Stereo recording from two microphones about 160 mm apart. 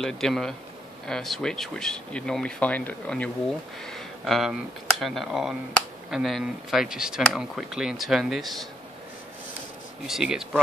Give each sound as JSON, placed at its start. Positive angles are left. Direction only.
{"t": 0.0, "sound": "speech", "side_deg": 5}
{"t": 10.0, "sound": "speech", "side_deg": 0}